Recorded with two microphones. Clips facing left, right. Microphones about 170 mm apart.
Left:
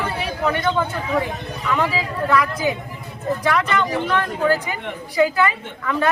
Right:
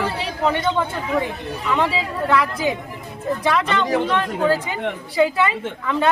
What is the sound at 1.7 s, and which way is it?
A woman's voice, 25° right (ahead or behind).